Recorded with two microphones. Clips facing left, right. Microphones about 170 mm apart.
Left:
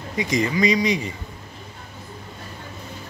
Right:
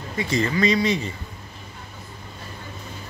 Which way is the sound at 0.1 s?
15° left (ahead or behind).